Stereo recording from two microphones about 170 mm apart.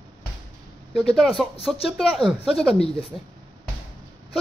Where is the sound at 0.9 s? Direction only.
Centre (ahead or behind).